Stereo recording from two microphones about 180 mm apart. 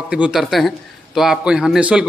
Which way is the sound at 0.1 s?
5° right (ahead or behind).